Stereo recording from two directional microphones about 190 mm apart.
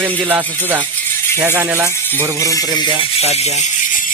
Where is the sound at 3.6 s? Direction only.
45° left (ahead or behind).